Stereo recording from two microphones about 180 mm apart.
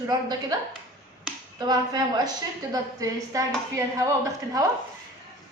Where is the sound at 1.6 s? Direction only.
20° right (ahead or behind).